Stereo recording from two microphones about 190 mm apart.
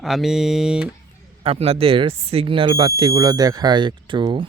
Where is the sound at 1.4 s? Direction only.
30° right (ahead or behind).